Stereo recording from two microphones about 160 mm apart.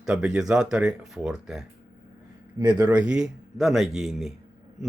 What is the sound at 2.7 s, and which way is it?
Speech, 10° right (ahead or behind).